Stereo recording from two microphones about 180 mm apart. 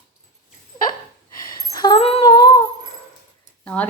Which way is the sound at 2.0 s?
35° left (ahead or behind).